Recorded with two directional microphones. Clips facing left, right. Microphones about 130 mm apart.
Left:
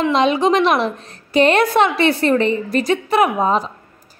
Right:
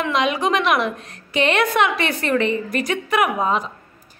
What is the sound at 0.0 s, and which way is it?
A woman's voice, 30° left (ahead or behind).